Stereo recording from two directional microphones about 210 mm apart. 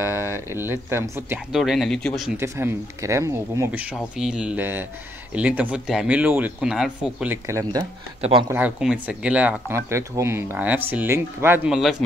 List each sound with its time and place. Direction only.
0.0 s speech: 10° right (ahead or behind)
1.5 s speech: centre (ahead or behind)
2.3 s speech: 15° right (ahead or behind)
3.9 s speech: 5° right (ahead or behind)
8.2 s speech: 25° right (ahead or behind)
8.5 s speech: 10° right (ahead or behind)